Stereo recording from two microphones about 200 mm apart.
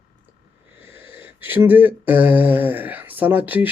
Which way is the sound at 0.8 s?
10° right (ahead or behind).